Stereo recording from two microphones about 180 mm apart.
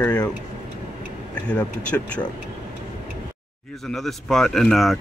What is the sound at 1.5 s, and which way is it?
Speech, 5° left (ahead or behind).